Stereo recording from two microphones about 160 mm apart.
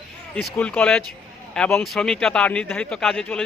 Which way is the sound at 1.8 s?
Centre (ahead or behind).